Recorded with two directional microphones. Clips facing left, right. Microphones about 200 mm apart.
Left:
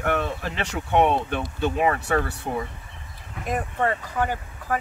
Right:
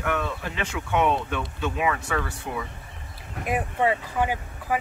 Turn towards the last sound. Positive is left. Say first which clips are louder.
# even
turn(degrees=-10)  # may be behind; listen again after turning